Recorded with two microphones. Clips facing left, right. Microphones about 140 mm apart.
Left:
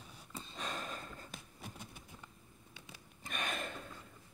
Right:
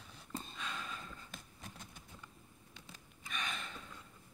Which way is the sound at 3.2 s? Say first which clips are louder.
Left 3 dB; 50° left (ahead or behind).